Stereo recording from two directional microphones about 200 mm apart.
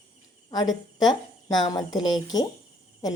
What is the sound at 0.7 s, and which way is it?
Speech, centre (ahead or behind).